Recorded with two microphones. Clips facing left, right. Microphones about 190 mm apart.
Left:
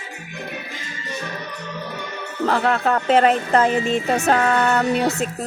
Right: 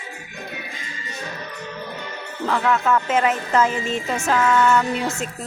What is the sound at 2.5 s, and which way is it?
Speech, 35° left (ahead or behind).